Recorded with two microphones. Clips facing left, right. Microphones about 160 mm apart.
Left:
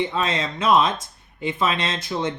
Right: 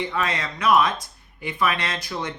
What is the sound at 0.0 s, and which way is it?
Speech, 25° left (ahead or behind).